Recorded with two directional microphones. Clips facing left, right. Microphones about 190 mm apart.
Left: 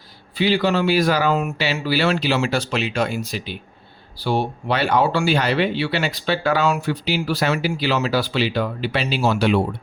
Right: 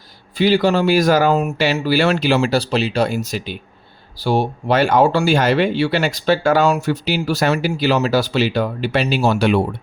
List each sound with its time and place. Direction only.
0.3 s speech: 45° right (ahead or behind)